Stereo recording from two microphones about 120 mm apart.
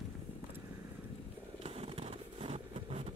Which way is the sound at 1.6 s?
55° right (ahead or behind).